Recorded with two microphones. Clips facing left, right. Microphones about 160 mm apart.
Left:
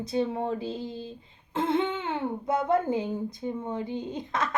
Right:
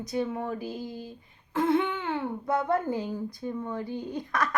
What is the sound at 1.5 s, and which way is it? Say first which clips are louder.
A woman's voice: right 1 dB; 25° left (ahead or behind).